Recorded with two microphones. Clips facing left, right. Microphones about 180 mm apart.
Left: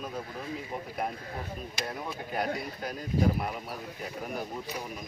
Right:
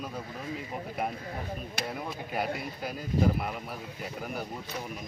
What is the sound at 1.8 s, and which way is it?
Speech, 55° right (ahead or behind).